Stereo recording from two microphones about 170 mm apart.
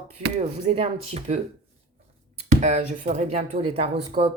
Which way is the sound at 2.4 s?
40° right (ahead or behind).